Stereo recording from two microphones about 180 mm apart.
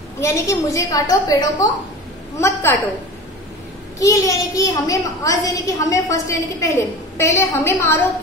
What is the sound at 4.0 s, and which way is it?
A child's voice, 20° left (ahead or behind).